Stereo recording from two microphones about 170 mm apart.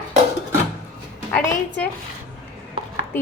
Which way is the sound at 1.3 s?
10° left (ahead or behind).